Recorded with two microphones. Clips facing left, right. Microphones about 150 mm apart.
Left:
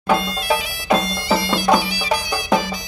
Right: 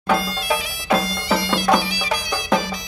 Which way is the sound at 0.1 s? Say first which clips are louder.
Left 2 dB; 20° left (ahead or behind).